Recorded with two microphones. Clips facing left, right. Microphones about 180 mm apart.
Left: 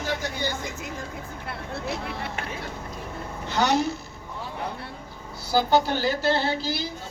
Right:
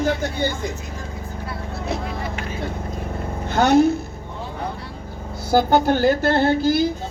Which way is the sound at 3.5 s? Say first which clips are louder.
Right 8 dB; 50° right (ahead or behind).